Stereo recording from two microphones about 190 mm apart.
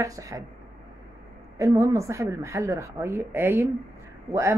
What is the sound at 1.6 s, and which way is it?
Speech, 15° right (ahead or behind).